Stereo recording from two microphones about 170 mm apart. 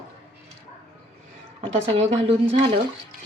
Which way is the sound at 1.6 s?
35° right (ahead or behind).